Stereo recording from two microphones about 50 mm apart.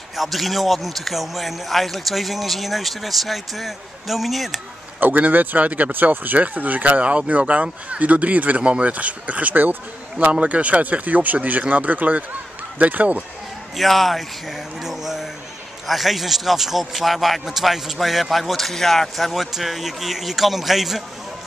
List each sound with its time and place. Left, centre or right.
0.1 s a man's voice: centre
5.0 s speech: right
13.7 s a man's voice: centre
14.8 s a sound: centre
15.9 s a man's voice: centre